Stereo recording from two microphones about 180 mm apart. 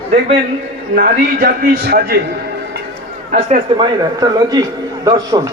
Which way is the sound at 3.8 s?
25° right (ahead or behind).